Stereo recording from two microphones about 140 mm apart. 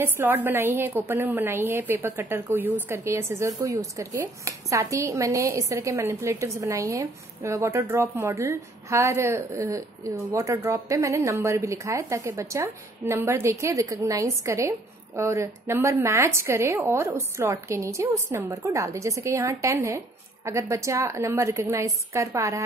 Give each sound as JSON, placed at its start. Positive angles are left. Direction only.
{"t": 0.0, "sound": "a woman's voice", "side_deg": -15}